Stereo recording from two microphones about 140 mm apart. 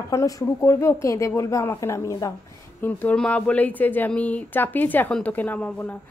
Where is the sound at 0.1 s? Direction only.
25° left (ahead or behind).